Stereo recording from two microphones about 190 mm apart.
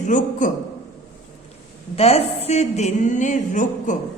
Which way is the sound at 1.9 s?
35° left (ahead or behind).